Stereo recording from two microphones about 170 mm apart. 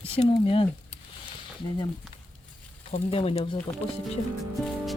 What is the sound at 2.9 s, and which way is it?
Speech, 35° left (ahead or behind).